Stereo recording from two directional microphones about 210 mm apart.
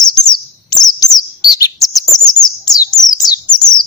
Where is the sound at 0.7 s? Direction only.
20° left (ahead or behind).